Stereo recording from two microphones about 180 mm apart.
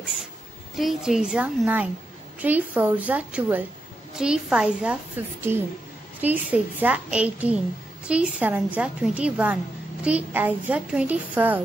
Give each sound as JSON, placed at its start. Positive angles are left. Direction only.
{"t": 0.7, "sound": "a child's voice", "side_deg": 0}